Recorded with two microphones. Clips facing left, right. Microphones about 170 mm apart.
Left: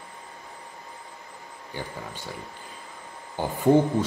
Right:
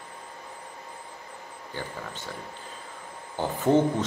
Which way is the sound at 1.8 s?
15° left (ahead or behind).